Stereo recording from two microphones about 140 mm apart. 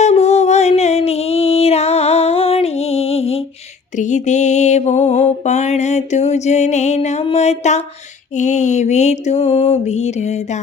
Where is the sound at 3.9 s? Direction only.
60° left (ahead or behind).